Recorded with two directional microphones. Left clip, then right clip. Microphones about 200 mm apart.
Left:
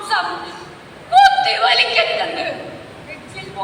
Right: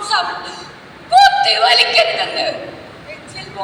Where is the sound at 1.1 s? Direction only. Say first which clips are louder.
Right 1 dB; 35° right (ahead or behind).